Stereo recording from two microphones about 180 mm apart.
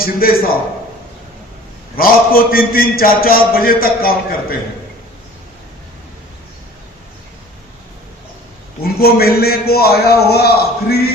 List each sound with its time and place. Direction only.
0.0 s a man's voice: 55° left (ahead or behind)
2.0 s a man's voice: 55° left (ahead or behind)
8.8 s a man's voice: 55° left (ahead or behind)